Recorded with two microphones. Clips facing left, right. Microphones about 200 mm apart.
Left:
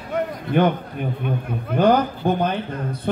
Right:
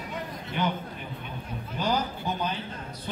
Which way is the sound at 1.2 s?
60° left (ahead or behind).